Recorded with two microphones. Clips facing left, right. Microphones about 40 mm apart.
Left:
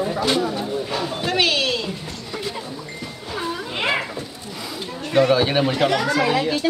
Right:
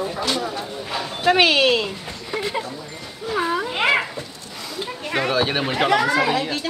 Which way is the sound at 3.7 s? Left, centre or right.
Centre.